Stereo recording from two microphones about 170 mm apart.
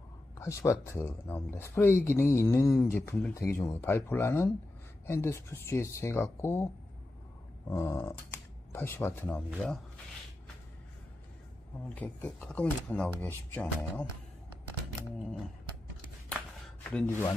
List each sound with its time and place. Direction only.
0.4 s speech: 15° left (ahead or behind)
7.7 s speech: 15° left (ahead or behind)
11.9 s speech: 10° left (ahead or behind)
16.9 s speech: 15° left (ahead or behind)